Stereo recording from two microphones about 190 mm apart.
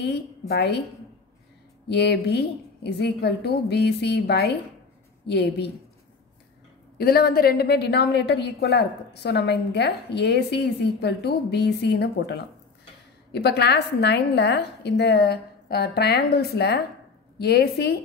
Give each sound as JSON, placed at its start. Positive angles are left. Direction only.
{"t": 0.0, "sound": "a woman's voice", "side_deg": 60}
{"t": 1.9, "sound": "a woman's voice", "side_deg": 60}
{"t": 7.0, "sound": "a woman's voice", "side_deg": 55}